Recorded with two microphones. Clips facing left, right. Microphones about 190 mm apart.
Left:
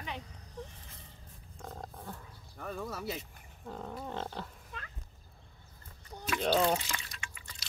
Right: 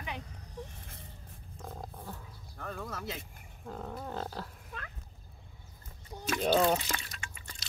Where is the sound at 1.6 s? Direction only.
Centre (ahead or behind).